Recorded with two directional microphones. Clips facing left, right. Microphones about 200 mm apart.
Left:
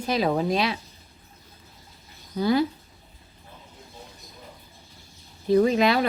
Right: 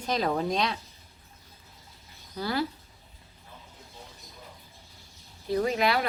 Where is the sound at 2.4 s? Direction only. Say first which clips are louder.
Left 8 dB; 20° left (ahead or behind).